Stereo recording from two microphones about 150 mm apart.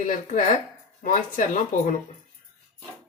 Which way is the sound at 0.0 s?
60° left (ahead or behind).